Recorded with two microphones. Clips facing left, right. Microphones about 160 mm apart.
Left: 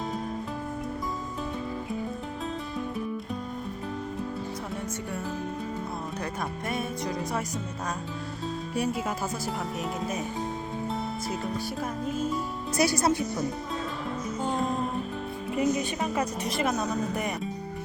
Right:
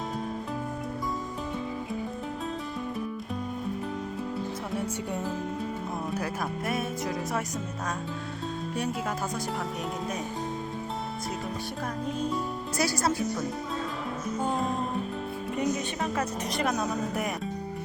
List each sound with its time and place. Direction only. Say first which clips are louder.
8.7 s speech: left 3 dB; 10° left (ahead or behind)
12.0 s a woman's voice: left 1 dB; 5° left (ahead or behind)
12.7 s speech: left 4 dB; 20° left (ahead or behind)
14.4 s music: left 1 dB; centre (ahead or behind)
15.5 s a woman's voice: left 3 dB; 5° left (ahead or behind)